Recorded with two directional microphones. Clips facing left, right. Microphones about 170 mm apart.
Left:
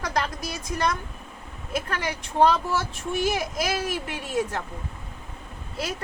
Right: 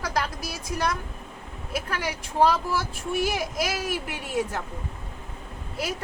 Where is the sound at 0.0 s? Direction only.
5° right (ahead or behind).